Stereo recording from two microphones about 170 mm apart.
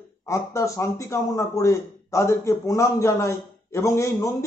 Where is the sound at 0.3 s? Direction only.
15° left (ahead or behind).